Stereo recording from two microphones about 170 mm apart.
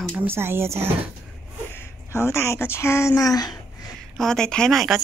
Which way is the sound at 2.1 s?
15° left (ahead or behind).